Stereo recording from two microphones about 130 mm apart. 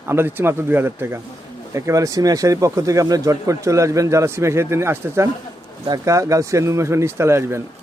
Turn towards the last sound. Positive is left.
turn(degrees=-20)  # may be behind; listen again after turning